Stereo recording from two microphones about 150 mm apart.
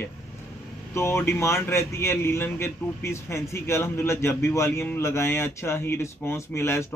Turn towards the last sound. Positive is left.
turn(degrees=15)  # may be behind; listen again after turning